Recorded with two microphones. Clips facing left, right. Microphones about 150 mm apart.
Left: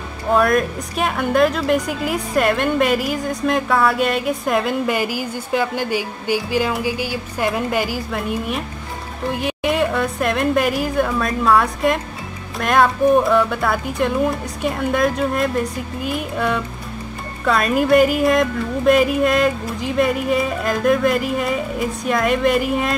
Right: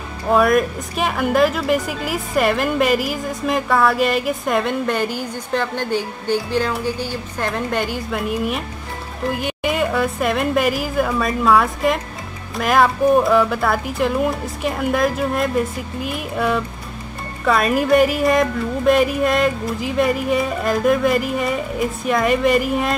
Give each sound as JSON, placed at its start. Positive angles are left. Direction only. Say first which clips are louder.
{"t": 0.3, "sound": "a woman's voice", "louder": "right 1 dB", "side_deg": 0}